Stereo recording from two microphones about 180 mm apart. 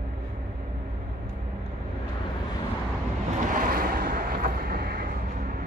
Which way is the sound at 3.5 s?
50° right (ahead or behind).